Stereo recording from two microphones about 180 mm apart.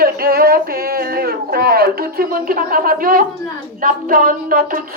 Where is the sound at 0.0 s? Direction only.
55° right (ahead or behind).